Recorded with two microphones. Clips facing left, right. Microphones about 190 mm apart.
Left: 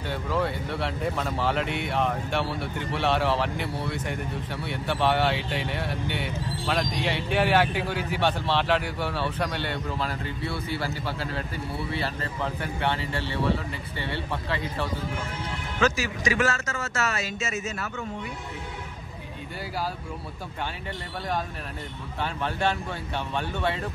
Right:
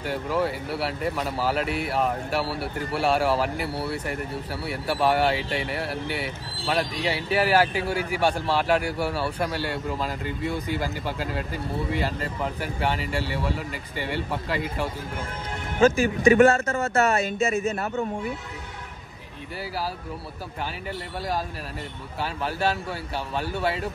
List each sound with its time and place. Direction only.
0.0 s speech: 10° right (ahead or behind)
15.8 s speech: 55° right (ahead or behind)
22.2 s speech: 5° right (ahead or behind)